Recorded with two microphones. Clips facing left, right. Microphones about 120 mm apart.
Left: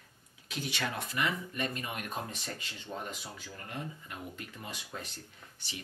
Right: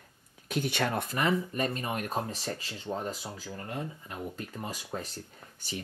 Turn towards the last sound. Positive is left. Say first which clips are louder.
# right 7 dB
turn(degrees=-40)  # may be behind; listen again after turning